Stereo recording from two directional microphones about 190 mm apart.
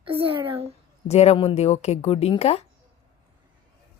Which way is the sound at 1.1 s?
35° left (ahead or behind).